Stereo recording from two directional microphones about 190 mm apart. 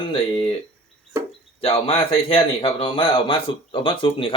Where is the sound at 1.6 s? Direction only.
30° left (ahead or behind).